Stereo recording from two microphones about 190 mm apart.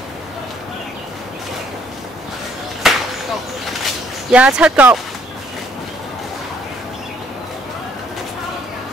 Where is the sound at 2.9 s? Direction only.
Centre (ahead or behind).